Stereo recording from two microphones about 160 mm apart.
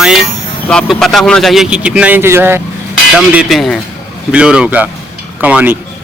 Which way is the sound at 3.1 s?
Centre (ahead or behind).